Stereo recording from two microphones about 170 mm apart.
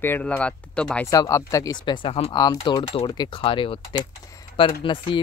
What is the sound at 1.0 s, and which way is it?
Speech, 20° left (ahead or behind).